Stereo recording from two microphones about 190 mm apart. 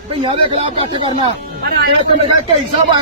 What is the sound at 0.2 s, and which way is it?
Speech, 30° right (ahead or behind).